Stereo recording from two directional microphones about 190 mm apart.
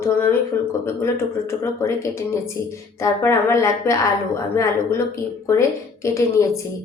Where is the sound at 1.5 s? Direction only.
15° left (ahead or behind).